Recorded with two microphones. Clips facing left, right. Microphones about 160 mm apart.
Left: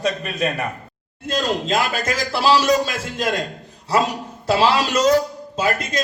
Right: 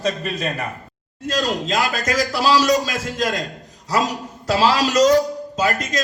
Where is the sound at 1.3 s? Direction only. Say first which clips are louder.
Left 1 dB; 30° left (ahead or behind).